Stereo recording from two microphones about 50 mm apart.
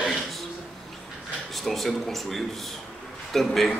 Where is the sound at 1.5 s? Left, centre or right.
Centre.